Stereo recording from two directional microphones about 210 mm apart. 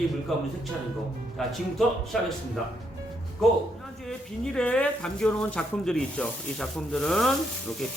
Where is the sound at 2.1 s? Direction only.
Centre (ahead or behind).